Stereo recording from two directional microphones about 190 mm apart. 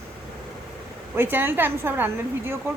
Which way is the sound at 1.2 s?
10° right (ahead or behind).